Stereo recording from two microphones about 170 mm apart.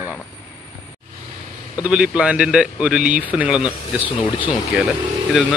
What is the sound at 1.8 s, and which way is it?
Speech, 5° right (ahead or behind).